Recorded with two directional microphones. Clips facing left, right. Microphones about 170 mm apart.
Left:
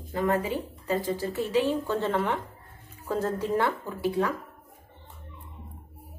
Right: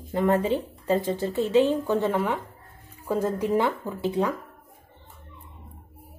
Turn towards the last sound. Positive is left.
turn(degrees=-20)  # may be behind; listen again after turning